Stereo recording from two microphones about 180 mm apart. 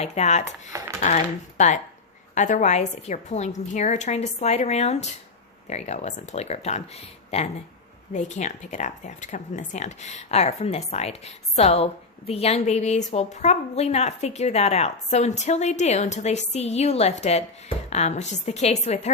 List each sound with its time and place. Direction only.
0.0 s speech: 40° left (ahead or behind)